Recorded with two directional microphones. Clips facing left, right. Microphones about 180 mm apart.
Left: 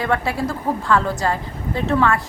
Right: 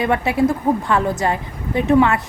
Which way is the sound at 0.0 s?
20° right (ahead or behind).